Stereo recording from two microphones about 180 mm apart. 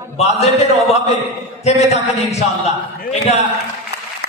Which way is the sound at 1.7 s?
35° left (ahead or behind).